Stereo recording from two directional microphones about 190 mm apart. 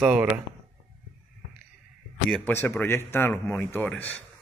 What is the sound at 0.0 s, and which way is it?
Speech, 10° right (ahead or behind).